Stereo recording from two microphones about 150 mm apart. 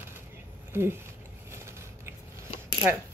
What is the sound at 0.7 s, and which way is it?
Speech, 15° right (ahead or behind).